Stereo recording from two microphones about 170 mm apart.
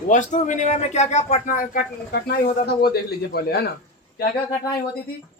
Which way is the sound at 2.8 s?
70° left (ahead or behind).